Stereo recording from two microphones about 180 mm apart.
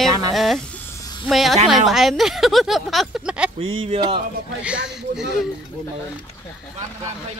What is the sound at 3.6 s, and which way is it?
Speech, 35° right (ahead or behind).